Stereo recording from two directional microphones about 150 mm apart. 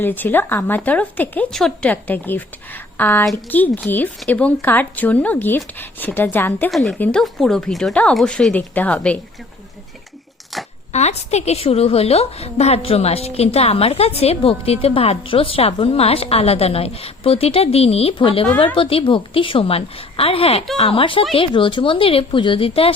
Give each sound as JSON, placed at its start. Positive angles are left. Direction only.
{"t": 0.0, "sound": "speech", "side_deg": 15}
{"t": 6.7, "sound": "a woman's voice", "side_deg": 0}
{"t": 10.5, "sound": "a sound", "side_deg": 0}
{"t": 10.9, "sound": "a woman's voice", "side_deg": 50}